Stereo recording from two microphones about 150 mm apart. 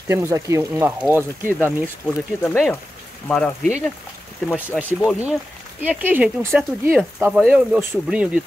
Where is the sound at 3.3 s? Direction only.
5° left (ahead or behind).